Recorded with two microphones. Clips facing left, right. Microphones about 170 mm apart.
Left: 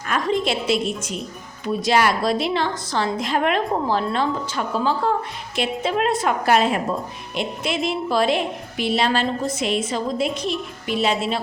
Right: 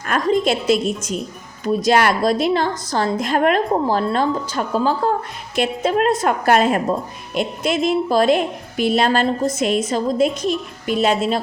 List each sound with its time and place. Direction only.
0.7 s a woman's voice: 40° right (ahead or behind)